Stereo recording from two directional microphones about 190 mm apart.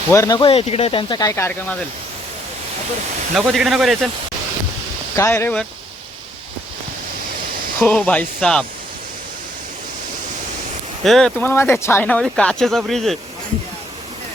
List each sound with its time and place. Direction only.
0.1 s speech: 20° left (ahead or behind)
3.3 s speech: centre (ahead or behind)
5.1 s speech: 15° left (ahead or behind)
7.8 s speech: 5° left (ahead or behind)
11.0 s speech: centre (ahead or behind)